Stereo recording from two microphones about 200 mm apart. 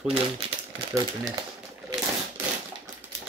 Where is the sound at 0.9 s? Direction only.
20° right (ahead or behind).